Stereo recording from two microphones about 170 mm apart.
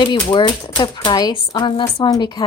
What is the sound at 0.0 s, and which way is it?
Speech, 30° left (ahead or behind).